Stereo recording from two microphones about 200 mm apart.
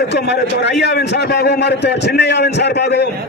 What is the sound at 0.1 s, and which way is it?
A man's voice, 55° left (ahead or behind).